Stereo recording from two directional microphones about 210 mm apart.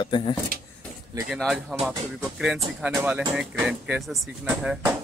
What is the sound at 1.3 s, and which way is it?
Speech, centre (ahead or behind).